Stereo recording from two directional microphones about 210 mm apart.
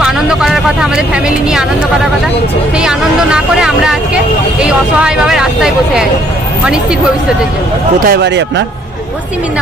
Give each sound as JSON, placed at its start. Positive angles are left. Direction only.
{"t": 0.0, "sound": "speech", "side_deg": 0}
{"t": 2.7, "sound": "speech", "side_deg": -5}
{"t": 8.0, "sound": "speech", "side_deg": -50}